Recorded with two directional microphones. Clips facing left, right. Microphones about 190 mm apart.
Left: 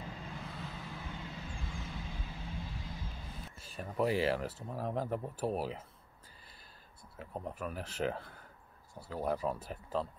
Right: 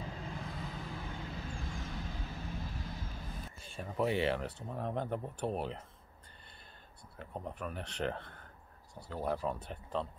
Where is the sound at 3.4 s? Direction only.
Centre (ahead or behind).